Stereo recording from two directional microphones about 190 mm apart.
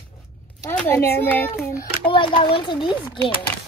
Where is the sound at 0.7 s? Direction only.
10° left (ahead or behind).